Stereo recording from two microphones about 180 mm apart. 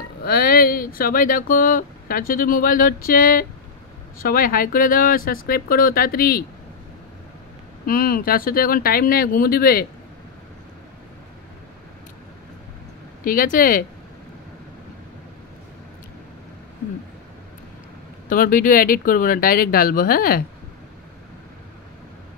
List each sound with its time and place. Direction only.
0.2 s speech: 55° left (ahead or behind)
7.8 s speech: 55° left (ahead or behind)
13.2 s speech: 50° left (ahead or behind)
18.3 s speech: 50° left (ahead or behind)